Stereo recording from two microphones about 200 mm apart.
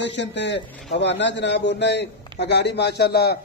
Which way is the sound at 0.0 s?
60° left (ahead or behind).